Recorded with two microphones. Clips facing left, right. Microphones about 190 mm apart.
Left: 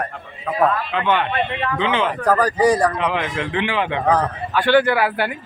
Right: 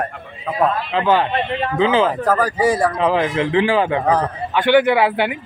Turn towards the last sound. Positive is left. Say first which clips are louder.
# right 3 dB
turn(degrees=-20)  # may be behind; listen again after turning